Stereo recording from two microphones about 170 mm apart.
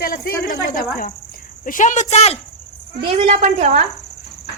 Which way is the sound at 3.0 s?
35° right (ahead or behind).